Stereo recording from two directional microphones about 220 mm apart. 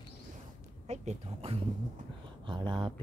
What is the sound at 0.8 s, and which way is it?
Speech, 30° right (ahead or behind).